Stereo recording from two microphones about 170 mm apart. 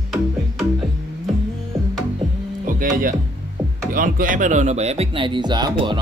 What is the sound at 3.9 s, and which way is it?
Speech, 55° right (ahead or behind).